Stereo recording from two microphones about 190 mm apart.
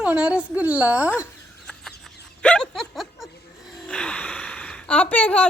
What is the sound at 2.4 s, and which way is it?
Chuckle, 5° left (ahead or behind).